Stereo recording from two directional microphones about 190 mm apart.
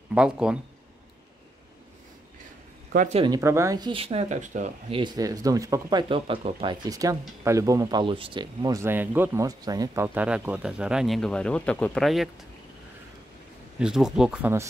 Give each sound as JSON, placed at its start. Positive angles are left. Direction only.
{"t": 0.1, "sound": "speech", "side_deg": -5}
{"t": 2.9, "sound": "speech", "side_deg": -45}
{"t": 3.3, "sound": "speech", "side_deg": -15}
{"t": 5.0, "sound": "speech", "side_deg": -20}
{"t": 13.7, "sound": "speech", "side_deg": -5}